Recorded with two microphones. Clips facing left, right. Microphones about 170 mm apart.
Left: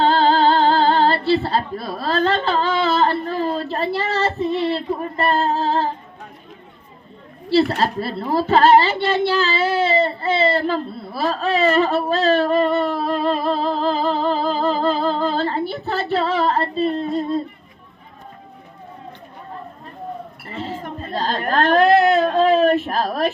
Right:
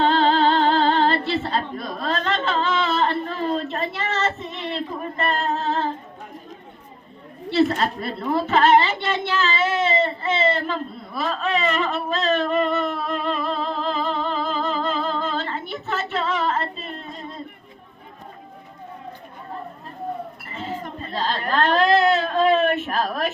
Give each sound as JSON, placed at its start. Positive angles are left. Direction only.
{"t": 0.0, "sound": "music", "side_deg": 35}
{"t": 7.8, "sound": "a child's voice", "side_deg": 30}
{"t": 20.8, "sound": "a sound", "side_deg": 45}